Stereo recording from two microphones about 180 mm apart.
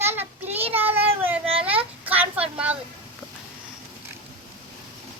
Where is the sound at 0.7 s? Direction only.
10° right (ahead or behind).